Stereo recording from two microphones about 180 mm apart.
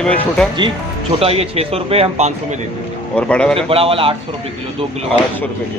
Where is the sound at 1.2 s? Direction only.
35° right (ahead or behind).